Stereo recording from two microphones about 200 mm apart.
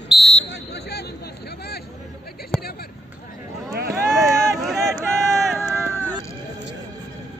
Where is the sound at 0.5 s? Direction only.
55° left (ahead or behind).